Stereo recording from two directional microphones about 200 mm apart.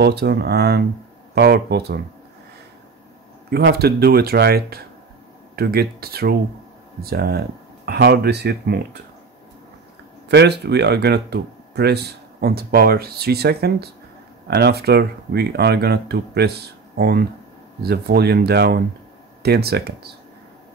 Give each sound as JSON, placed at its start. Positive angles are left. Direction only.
{"t": 0.0, "sound": "speech", "side_deg": -55}
{"t": 3.4, "sound": "speech", "side_deg": -55}
{"t": 10.2, "sound": "speech", "side_deg": -55}